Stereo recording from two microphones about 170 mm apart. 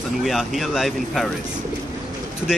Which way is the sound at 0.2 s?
Centre (ahead or behind).